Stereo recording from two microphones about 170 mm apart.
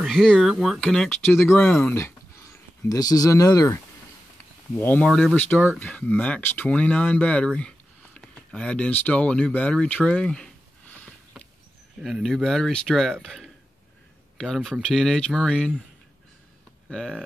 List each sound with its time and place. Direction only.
0.0 s speech: centre (ahead or behind)
2.9 s speech: 20° left (ahead or behind); by 10.5 s 5° left (ahead or behind)
12.0 s speech: centre (ahead or behind)
16.9 s speech: 5° left (ahead or behind)